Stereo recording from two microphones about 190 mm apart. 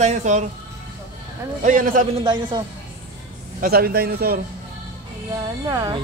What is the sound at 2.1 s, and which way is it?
Speech, 25° right (ahead or behind).